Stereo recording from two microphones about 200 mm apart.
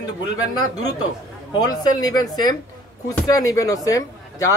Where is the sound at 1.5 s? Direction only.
20° left (ahead or behind).